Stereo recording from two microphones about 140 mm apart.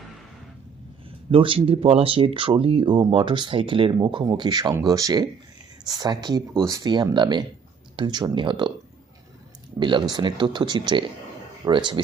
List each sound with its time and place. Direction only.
1.3 s speech: 40° right (ahead or behind)
9.8 s speech: 35° right (ahead or behind)